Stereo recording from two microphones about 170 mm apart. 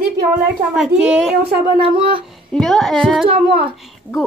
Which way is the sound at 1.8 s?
30° right (ahead or behind).